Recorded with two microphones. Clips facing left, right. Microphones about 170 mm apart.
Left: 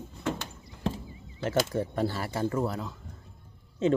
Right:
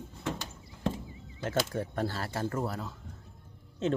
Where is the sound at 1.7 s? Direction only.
15° left (ahead or behind).